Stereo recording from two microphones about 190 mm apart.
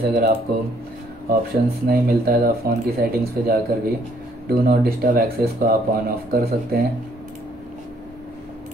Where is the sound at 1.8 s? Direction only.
50° right (ahead or behind).